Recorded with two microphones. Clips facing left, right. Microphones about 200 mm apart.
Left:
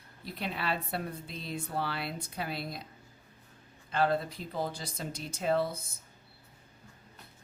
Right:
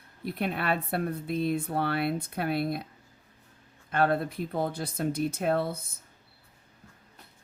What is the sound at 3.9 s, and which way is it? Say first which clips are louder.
Speech: right 3 dB; 55° right (ahead or behind).